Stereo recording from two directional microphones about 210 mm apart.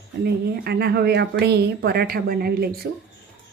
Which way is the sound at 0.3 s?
50° right (ahead or behind).